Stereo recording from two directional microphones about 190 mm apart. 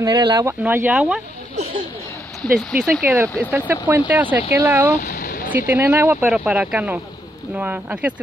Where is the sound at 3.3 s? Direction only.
10° left (ahead or behind).